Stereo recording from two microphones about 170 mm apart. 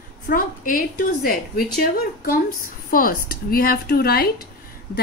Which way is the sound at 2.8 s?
60° left (ahead or behind).